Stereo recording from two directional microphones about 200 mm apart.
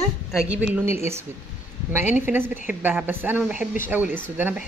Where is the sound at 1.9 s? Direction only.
10° right (ahead or behind).